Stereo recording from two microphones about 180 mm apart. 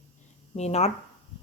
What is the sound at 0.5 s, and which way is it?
Speech, 35° left (ahead or behind).